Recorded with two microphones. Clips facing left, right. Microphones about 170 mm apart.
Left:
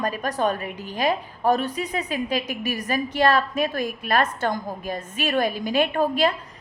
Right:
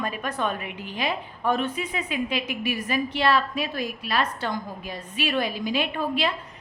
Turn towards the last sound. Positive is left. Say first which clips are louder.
# left 5 dB
turn(degrees=45)  # may be behind; listen again after turning